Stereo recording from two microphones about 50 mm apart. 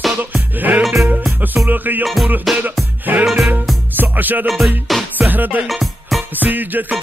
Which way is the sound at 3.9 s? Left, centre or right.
Right.